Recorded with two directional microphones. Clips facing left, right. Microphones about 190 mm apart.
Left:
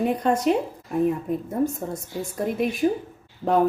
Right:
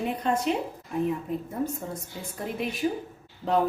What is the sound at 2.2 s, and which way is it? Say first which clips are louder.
Speech: left 8 dB; 45° left (ahead or behind).